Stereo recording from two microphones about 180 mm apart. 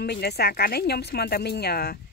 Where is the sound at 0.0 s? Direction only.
65° left (ahead or behind).